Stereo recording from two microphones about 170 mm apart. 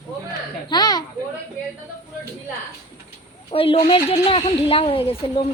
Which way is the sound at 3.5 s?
35° left (ahead or behind).